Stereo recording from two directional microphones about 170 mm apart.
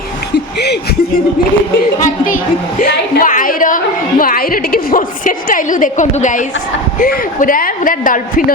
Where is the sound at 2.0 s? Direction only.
50° left (ahead or behind).